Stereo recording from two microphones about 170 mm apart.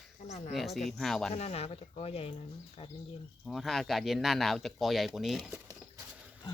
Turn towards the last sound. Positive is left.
turn(degrees=-5)  # may be behind; listen again after turning